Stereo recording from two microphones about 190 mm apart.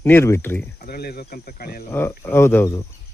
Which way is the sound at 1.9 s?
10° left (ahead or behind).